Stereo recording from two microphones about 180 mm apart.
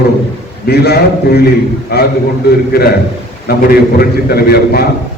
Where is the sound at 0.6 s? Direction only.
65° left (ahead or behind).